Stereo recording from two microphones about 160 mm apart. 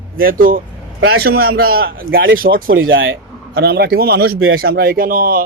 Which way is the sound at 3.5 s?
75° right (ahead or behind).